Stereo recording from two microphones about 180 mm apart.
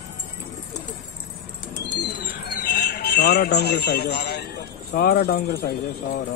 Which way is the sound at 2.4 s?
60° left (ahead or behind).